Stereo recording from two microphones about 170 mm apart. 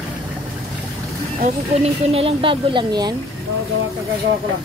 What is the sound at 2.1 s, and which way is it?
Speech, 35° right (ahead or behind).